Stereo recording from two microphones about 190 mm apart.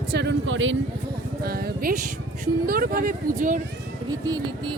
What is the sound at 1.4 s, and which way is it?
Speech, 55° right (ahead or behind).